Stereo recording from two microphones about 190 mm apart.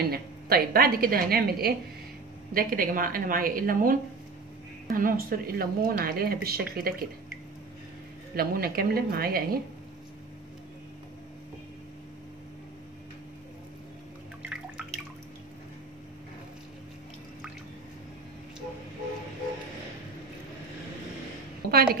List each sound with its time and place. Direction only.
0.0 s a woman's voice: 50° right (ahead or behind)
8.4 s speech: 50° right (ahead or behind)
14.4 s drip: 5° right (ahead or behind)
21.6 s a sound: 50° right (ahead or behind)